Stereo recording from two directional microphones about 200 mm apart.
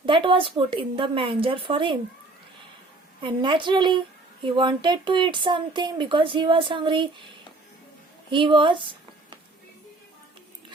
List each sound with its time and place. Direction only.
0.0 s speech: 25° right (ahead or behind)
3.2 s speech: 25° right (ahead or behind)